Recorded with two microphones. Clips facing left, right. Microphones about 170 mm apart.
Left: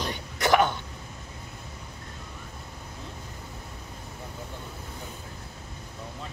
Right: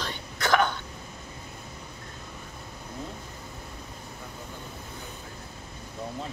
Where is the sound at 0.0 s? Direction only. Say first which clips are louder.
Left 3 dB; 15° left (ahead or behind).